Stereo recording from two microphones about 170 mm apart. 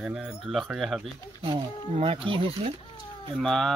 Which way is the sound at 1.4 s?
35° right (ahead or behind).